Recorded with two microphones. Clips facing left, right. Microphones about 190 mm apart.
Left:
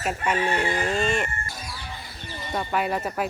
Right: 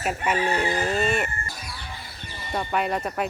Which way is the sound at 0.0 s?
5° right (ahead or behind).